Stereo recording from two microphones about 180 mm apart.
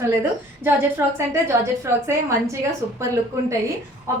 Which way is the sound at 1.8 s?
15° right (ahead or behind).